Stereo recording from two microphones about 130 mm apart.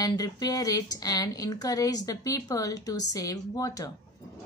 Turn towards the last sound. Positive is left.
turn(degrees=25)  # may be behind; listen again after turning